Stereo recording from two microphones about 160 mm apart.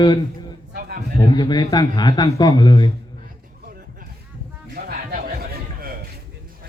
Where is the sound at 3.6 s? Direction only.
65° right (ahead or behind).